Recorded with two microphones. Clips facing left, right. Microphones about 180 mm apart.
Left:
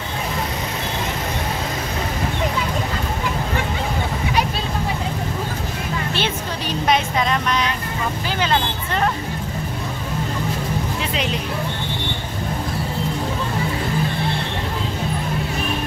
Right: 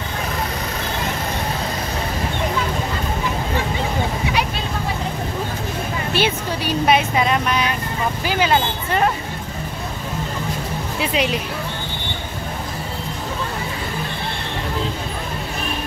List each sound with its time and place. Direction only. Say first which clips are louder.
6.1 s speech: right 3 dB; 10° right (ahead or behind)
11.0 s speech: right 3 dB; 10° right (ahead or behind)